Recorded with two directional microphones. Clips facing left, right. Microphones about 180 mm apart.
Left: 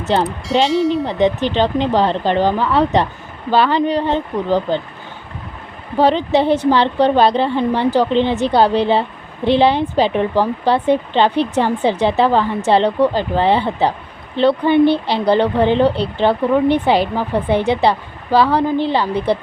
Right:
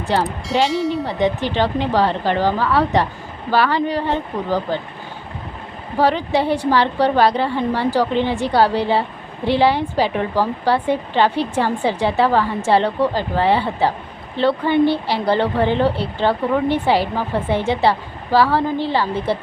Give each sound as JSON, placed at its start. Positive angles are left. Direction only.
{"t": 0.0, "sound": "speech", "side_deg": 20}
{"t": 6.0, "sound": "speech", "side_deg": 20}